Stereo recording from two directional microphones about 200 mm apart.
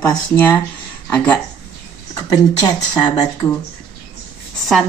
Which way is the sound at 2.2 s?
20° left (ahead or behind).